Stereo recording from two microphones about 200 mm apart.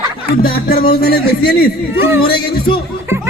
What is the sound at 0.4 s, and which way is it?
A man's voice, 45° left (ahead or behind).